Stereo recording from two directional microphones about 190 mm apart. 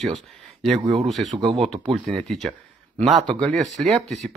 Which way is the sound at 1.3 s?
30° right (ahead or behind).